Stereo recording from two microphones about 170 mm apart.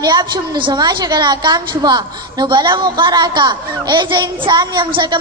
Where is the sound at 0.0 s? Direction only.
25° right (ahead or behind).